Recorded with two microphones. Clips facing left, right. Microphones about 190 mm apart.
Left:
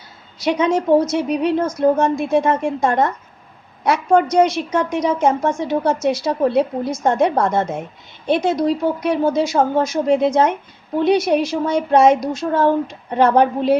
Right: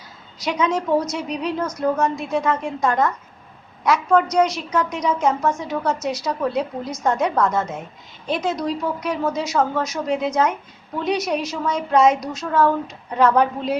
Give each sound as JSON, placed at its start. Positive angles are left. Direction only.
{"t": 0.3, "sound": "a woman's voice", "side_deg": 30}
{"t": 1.3, "sound": "speech", "side_deg": 55}
{"t": 1.5, "sound": "a woman's voice", "side_deg": 25}